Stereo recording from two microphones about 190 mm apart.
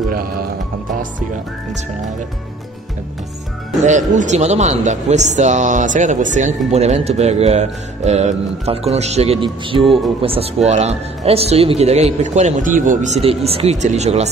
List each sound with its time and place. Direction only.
3.8 s speech: 40° right (ahead or behind)